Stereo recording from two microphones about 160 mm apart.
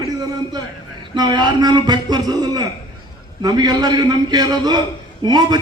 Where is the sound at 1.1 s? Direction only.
25° right (ahead or behind).